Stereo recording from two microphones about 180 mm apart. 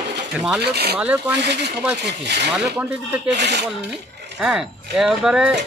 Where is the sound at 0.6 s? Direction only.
65° right (ahead or behind).